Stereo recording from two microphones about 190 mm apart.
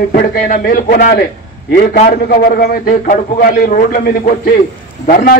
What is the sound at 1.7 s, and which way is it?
Speech, 35° left (ahead or behind).